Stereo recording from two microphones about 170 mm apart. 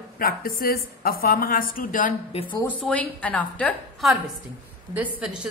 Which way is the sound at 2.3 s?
35° left (ahead or behind).